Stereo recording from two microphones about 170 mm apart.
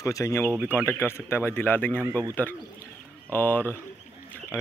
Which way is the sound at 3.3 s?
10° left (ahead or behind).